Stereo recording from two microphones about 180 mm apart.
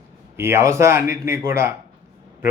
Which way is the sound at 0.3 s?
15° right (ahead or behind).